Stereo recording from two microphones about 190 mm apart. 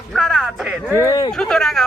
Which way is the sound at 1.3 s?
Centre (ahead or behind).